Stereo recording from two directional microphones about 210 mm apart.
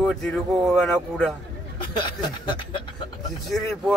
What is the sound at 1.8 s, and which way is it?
Speech, 20° left (ahead or behind).